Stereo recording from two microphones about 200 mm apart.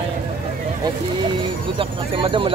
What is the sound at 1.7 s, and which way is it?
Speech, 25° right (ahead or behind).